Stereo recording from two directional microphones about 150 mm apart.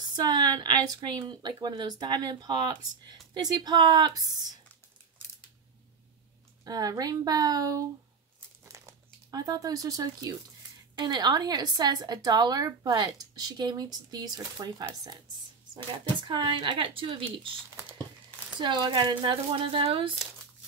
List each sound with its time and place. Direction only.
0.1 s a woman's voice: 25° right (ahead or behind)
6.6 s a woman's voice: 25° right (ahead or behind)
8.6 s crumpling: 20° right (ahead or behind)
11.0 s a woman's voice: 30° right (ahead or behind)
16.3 s a woman's voice: 35° right (ahead or behind)
18.6 s a woman's voice: 30° right (ahead or behind)